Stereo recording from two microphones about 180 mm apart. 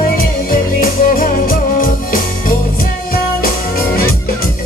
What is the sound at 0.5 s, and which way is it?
Music, 50° left (ahead or behind).